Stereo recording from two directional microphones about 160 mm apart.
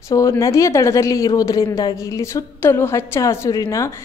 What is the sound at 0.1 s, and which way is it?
A woman's voice, 20° left (ahead or behind).